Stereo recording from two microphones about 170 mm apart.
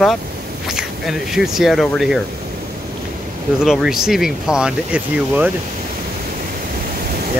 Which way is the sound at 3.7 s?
5° right (ahead or behind).